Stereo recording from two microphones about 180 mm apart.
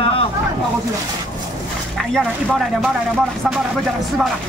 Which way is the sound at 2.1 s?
Centre (ahead or behind).